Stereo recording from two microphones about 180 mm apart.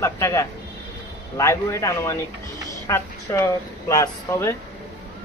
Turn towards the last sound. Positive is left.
turn(degrees=15)  # may be behind; listen again after turning